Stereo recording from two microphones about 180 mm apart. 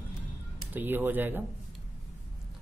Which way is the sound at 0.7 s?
10° right (ahead or behind).